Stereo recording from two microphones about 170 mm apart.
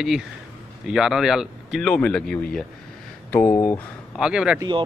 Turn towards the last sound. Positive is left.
turn(degrees=-25)  # may be behind; listen again after turning